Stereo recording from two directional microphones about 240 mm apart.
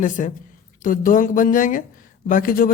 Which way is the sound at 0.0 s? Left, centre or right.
Left.